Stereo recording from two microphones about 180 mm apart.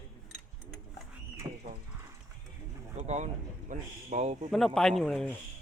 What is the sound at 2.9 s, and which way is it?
Speech, 40° right (ahead or behind).